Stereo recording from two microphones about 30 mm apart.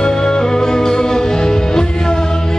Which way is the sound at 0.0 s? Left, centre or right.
Left.